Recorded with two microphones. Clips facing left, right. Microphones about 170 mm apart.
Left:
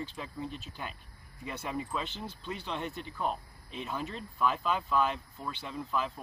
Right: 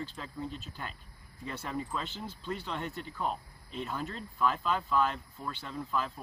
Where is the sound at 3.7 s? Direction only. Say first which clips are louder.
Even; 10° left (ahead or behind).